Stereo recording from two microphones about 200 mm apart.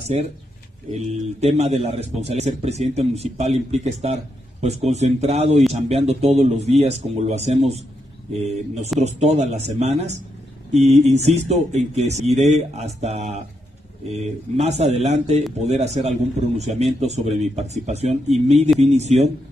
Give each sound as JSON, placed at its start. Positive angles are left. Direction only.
{"t": 0.9, "sound": "a man's voice", "side_deg": -35}